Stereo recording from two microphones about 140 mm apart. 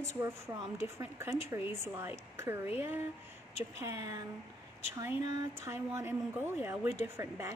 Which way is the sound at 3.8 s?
20° right (ahead or behind).